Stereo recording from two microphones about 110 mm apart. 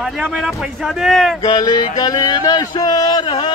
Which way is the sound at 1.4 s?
40° left (ahead or behind).